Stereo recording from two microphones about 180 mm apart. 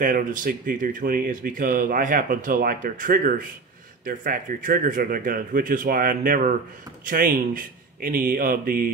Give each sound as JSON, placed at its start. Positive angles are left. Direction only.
{"t": 0.0, "sound": "speech", "side_deg": -50}